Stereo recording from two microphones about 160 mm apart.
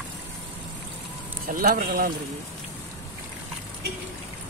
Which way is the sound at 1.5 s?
65° right (ahead or behind).